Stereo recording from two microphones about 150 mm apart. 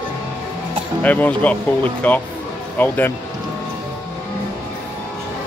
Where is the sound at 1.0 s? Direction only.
10° left (ahead or behind).